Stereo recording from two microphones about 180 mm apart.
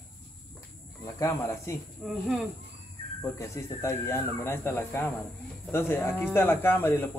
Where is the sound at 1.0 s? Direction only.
15° left (ahead or behind).